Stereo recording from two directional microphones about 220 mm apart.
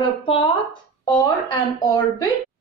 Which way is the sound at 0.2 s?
25° left (ahead or behind).